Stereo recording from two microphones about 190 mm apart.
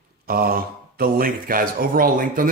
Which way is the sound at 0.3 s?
50° right (ahead or behind).